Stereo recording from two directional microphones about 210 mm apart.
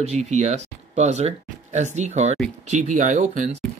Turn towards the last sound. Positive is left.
turn(degrees=-35)  # may be behind; listen again after turning